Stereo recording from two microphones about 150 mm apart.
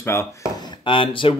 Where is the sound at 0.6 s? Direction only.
30° left (ahead or behind).